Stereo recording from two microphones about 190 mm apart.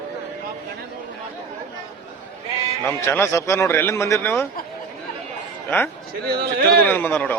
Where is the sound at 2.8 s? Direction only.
15° left (ahead or behind).